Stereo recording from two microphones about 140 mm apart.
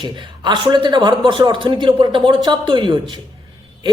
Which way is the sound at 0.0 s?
30° right (ahead or behind).